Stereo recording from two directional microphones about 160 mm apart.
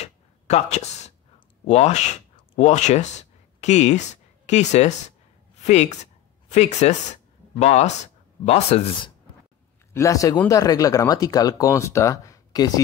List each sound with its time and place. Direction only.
0.0 s a sound: 45° left (ahead or behind)
1.7 s speech: 45° left (ahead or behind)
9.9 s speech: 20° left (ahead or behind)